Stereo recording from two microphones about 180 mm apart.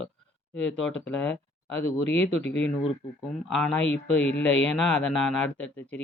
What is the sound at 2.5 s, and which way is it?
Speech, 80° left.